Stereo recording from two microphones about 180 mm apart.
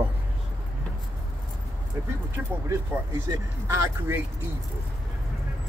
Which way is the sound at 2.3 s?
15° right (ahead or behind).